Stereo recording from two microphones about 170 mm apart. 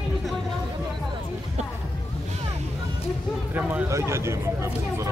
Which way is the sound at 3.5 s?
10° right (ahead or behind).